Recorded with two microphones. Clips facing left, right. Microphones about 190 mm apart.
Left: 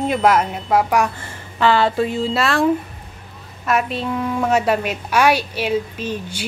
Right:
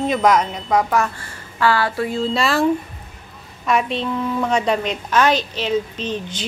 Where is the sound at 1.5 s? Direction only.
20° left (ahead or behind).